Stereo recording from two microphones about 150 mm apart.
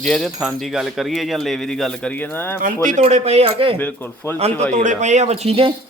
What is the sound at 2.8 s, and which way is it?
Speech, 50° right (ahead or behind).